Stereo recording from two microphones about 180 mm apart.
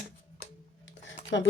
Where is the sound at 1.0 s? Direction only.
90° left.